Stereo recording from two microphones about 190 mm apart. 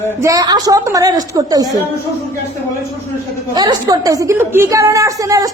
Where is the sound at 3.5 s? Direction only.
20° right (ahead or behind).